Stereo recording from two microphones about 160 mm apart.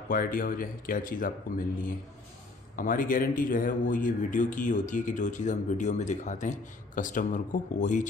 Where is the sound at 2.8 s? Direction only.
60° left (ahead or behind).